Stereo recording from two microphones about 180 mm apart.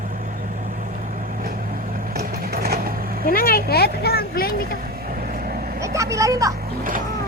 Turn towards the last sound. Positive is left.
turn(degrees=-50)  # may be behind; listen again after turning